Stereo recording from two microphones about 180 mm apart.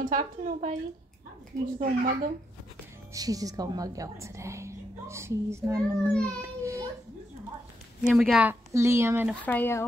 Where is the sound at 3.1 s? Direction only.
20° right (ahead or behind).